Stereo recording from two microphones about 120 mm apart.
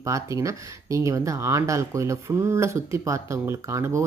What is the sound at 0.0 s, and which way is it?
Speech, 25° right (ahead or behind).